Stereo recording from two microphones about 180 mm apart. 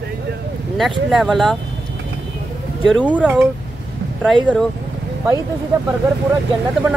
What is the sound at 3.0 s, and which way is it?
Speech, 10° right (ahead or behind).